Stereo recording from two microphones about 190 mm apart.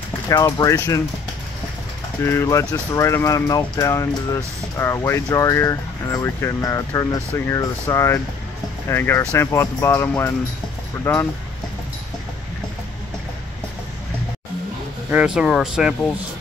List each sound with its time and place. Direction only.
0.3 s speech: 15° left (ahead or behind)
2.2 s speech: 15° left (ahead or behind)
15.0 s speech: 5° right (ahead or behind)